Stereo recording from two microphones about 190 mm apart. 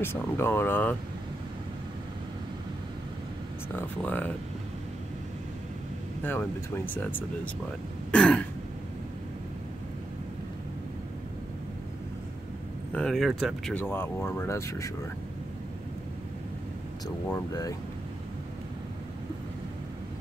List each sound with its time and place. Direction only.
0.0 s speech: 10° left (ahead or behind)
3.7 s speech: 10° left (ahead or behind)
6.9 s speech: 10° left (ahead or behind)
12.9 s speech: centre (ahead or behind)
13.7 s speech: 10° left (ahead or behind)
17.3 s speech: 20° left (ahead or behind)